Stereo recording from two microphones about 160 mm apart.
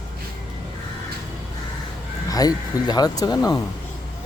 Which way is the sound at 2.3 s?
25° left (ahead or behind).